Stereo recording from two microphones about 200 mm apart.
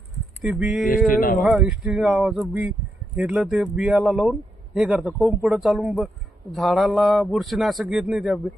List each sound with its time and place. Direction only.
0.4 s speech: 5° right (ahead or behind)
0.9 s a sound: 45° left (ahead or behind)
1.5 s speech: 5° right (ahead or behind)